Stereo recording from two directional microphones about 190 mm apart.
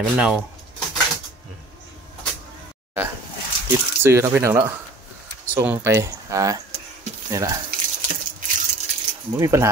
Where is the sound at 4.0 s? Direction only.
15° right (ahead or behind).